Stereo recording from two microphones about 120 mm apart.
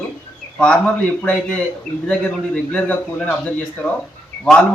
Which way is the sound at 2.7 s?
10° left (ahead or behind).